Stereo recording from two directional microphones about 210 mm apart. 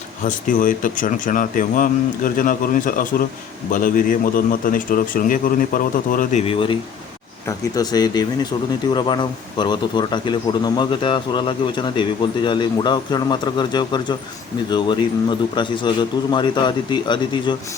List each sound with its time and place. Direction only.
0.3 s speech: 40° left (ahead or behind)
6.4 s speech: 25° left (ahead or behind)